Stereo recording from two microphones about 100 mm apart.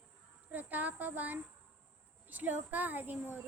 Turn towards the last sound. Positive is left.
turn(degrees=-20)  # may be behind; listen again after turning